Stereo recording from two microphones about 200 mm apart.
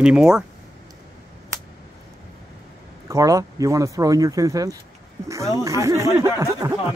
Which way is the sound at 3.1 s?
15° right (ahead or behind).